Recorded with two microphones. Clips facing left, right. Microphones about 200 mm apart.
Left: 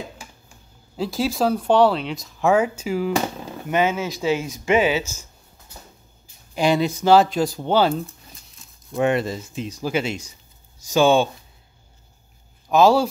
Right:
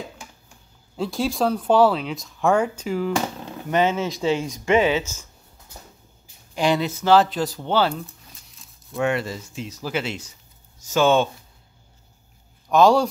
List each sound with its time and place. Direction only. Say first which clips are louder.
0.9 s speech: left 1 dB; 5° left (ahead or behind)
6.5 s speech: left 2 dB; 10° left (ahead or behind)
8.6 s a sound: left 1 dB; centre (ahead or behind)
8.9 s speech: left 3 dB; 20° left (ahead or behind)
12.6 s speech: even; 5° left (ahead or behind)